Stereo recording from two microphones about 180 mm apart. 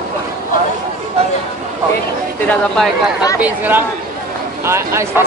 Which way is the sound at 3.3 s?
10° right (ahead or behind).